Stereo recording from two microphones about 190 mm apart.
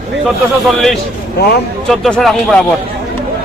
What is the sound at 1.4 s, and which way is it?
Speech, 55° left (ahead or behind).